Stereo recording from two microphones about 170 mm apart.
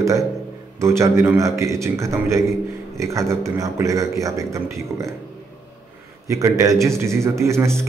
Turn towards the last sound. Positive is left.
turn(degrees=-15)  # may be behind; listen again after turning